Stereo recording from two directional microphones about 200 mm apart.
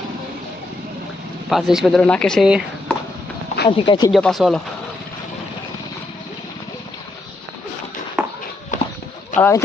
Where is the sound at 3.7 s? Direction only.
25° left (ahead or behind).